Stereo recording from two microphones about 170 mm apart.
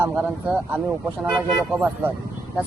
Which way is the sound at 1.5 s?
5° left (ahead or behind).